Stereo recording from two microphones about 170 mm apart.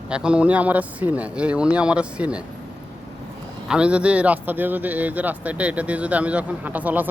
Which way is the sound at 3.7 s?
5° right (ahead or behind).